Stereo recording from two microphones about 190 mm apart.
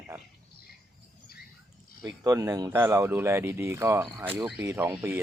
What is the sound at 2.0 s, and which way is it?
Speech, 20° right (ahead or behind).